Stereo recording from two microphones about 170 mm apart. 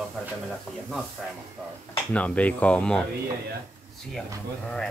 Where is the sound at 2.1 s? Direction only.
10° left (ahead or behind).